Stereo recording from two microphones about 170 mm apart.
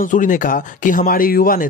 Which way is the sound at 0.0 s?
50° left (ahead or behind).